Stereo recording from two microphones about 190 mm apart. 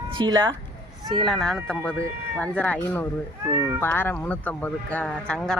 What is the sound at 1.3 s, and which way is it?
Speech, centre (ahead or behind).